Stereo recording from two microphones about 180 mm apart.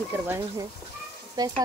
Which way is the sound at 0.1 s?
10° right (ahead or behind).